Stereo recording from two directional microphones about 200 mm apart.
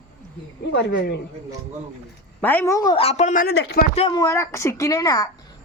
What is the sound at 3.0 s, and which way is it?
Speech, 30° left (ahead or behind).